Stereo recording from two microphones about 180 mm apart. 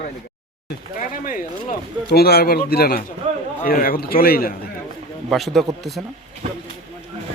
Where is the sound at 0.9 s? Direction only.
50° left (ahead or behind).